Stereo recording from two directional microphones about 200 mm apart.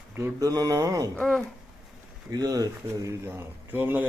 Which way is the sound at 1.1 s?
5° left (ahead or behind).